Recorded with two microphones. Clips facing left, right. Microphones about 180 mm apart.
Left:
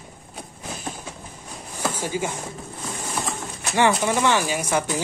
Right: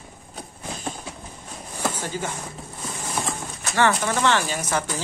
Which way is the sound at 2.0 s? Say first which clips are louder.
Left 3 dB; 10° left (ahead or behind).